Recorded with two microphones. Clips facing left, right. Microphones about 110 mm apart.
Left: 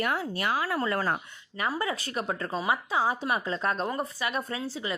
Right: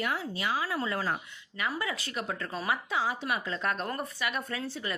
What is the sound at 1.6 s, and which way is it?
Speech, 35° left (ahead or behind).